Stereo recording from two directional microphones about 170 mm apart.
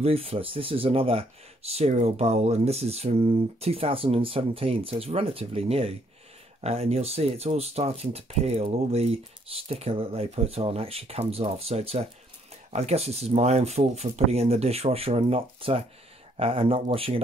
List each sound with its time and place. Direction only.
0.0 s speech: 35° right (ahead or behind)